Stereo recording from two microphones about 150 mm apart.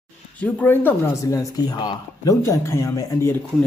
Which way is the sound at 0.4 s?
10° left (ahead or behind).